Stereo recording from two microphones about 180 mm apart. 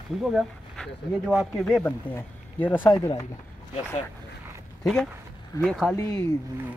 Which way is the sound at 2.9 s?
20° left (ahead or behind).